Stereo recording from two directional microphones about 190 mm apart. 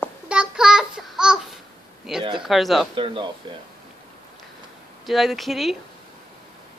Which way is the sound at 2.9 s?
25° right (ahead or behind).